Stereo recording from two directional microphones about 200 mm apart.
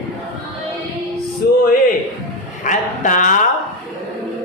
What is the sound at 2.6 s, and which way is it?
Speech, 40° left (ahead or behind).